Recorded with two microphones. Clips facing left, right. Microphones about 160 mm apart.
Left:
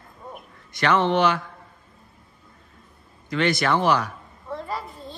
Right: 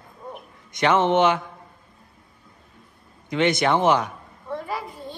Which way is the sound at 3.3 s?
20° right (ahead or behind).